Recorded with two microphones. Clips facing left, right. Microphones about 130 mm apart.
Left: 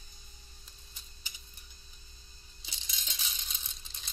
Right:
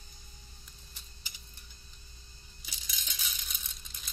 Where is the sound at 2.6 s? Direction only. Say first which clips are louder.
Right 1 dB; 25° left (ahead or behind).